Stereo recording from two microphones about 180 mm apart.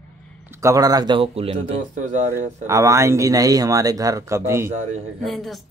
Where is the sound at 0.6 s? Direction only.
20° right (ahead or behind).